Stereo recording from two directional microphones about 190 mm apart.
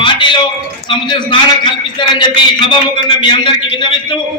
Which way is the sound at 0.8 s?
25° left (ahead or behind).